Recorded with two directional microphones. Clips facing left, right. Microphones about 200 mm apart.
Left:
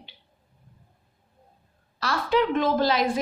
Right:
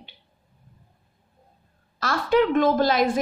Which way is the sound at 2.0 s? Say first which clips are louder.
Right 3 dB; 50° right (ahead or behind).